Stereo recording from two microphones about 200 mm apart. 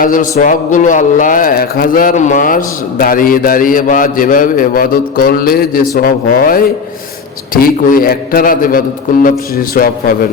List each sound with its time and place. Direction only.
0.0 s speech: 45° left (ahead or behind)